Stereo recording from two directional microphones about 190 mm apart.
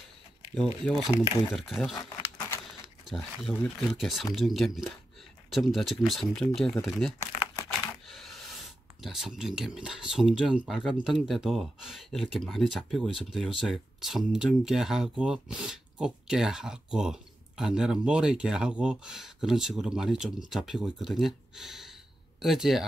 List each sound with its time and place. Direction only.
0.8 s speech: centre (ahead or behind)
2.0 s a sound: 15° left (ahead or behind)
3.1 s speech: centre (ahead or behind)
7.3 s crumpling: 20° left (ahead or behind)
8.1 s gasp: centre (ahead or behind)
9.0 s speech: centre (ahead or behind)